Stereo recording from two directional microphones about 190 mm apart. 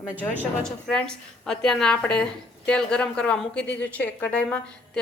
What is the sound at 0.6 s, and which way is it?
Speech, 5° left (ahead or behind).